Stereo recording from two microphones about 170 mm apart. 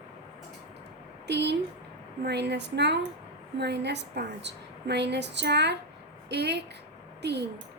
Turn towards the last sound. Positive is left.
turn(degrees=-80)